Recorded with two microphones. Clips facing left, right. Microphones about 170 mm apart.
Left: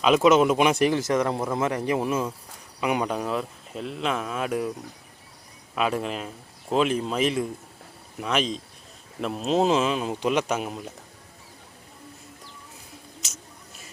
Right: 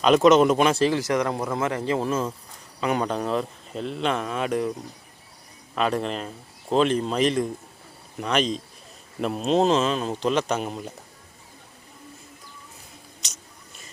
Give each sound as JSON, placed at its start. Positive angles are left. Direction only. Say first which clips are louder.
{"t": 0.0, "sound": "speech", "louder": "right 2 dB", "side_deg": 5}
{"t": 5.7, "sound": "speech", "louder": "right 1 dB", "side_deg": 5}
{"t": 13.2, "sound": "a sound", "louder": "left 2 dB", "side_deg": 5}